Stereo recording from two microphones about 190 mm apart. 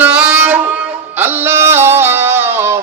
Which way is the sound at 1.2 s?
15° right (ahead or behind).